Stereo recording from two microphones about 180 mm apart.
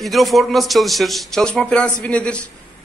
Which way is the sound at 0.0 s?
Centre (ahead or behind).